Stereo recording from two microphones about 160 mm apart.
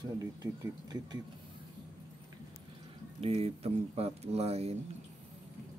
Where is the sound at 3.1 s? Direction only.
40° right (ahead or behind).